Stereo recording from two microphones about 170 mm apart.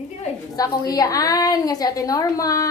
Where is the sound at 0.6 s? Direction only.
20° left (ahead or behind).